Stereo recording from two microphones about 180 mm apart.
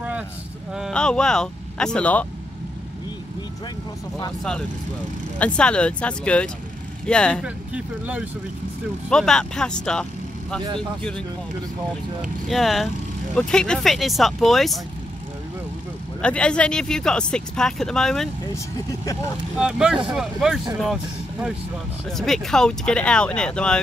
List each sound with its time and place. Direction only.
0.7 s speech: 5° left (ahead or behind)
5.4 s speech: 5° left (ahead or behind)
7.4 s speech: 5° right (ahead or behind)
9.1 s speech: 5° left (ahead or behind)
16.2 s speech: 5° left (ahead or behind)
18.5 s speech: 15° left (ahead or behind)
19.6 s speech: 5° right (ahead or behind)